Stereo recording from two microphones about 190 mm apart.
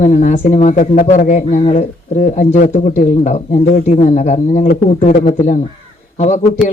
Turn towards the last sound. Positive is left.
turn(degrees=40)  # may be behind; listen again after turning